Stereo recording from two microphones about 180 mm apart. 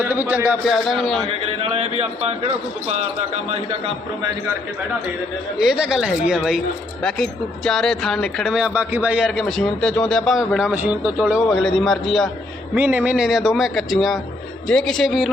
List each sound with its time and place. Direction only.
0.0 s a man's voice: 10° right (ahead or behind)
1.3 s a man's voice: 30° right (ahead or behind)
3.5 s a man's voice: 30° right (ahead or behind)
5.5 s speech: 5° right (ahead or behind)
12.7 s speech: 10° right (ahead or behind)